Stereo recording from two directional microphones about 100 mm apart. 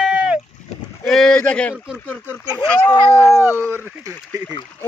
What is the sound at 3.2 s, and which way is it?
Speech, 30° left (ahead or behind).